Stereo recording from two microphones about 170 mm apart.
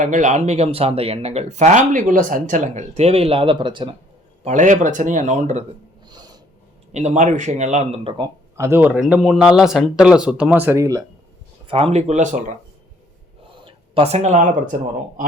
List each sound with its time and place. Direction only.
0.0 s speech: 45° right (ahead or behind); by 3.9 s 30° right (ahead or behind)
4.4 s speech: 45° right (ahead or behind)
6.1 s snort: 25° right (ahead or behind)
6.9 s speech: 40° right (ahead or behind)
8.1 s speech: 20° right (ahead or behind)
11.7 s speech: 35° right (ahead or behind)
13.7 s speech: 35° right (ahead or behind)